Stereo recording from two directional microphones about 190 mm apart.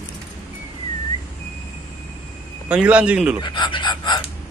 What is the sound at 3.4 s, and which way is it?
Speech, 25° left (ahead or behind).